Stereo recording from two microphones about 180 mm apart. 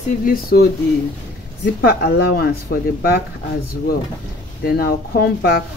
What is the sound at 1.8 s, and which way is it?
Speech, 60° left (ahead or behind).